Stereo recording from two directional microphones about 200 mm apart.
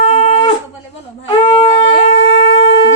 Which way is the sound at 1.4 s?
30° left (ahead or behind).